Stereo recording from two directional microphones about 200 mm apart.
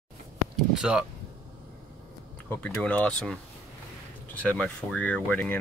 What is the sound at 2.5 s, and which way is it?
Speech, 5° left (ahead or behind).